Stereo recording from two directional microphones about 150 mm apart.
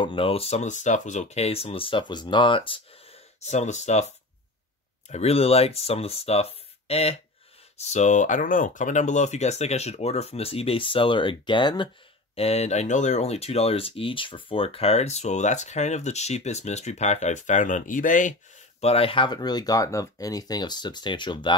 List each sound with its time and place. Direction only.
0.0 s speech: 35° left (ahead or behind)
5.1 s speech: 45° left (ahead or behind)
12.4 s speech: 45° left (ahead or behind)
18.8 s speech: 40° left (ahead or behind)